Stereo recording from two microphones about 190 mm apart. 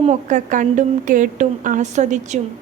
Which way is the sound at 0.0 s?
40° right (ahead or behind).